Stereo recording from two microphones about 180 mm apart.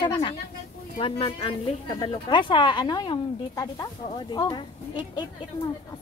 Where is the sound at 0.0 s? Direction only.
30° left (ahead or behind).